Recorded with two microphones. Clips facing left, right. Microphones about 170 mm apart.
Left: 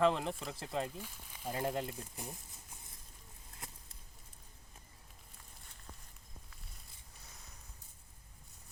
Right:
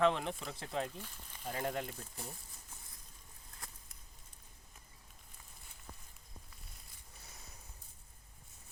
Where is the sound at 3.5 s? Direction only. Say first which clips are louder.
Left 2 dB; 25° left (ahead or behind).